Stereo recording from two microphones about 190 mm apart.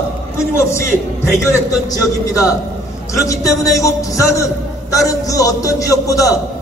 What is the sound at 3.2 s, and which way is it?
A man's voice, 15° left (ahead or behind).